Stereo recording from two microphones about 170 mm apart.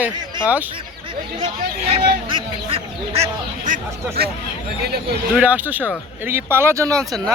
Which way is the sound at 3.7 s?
65° right (ahead or behind).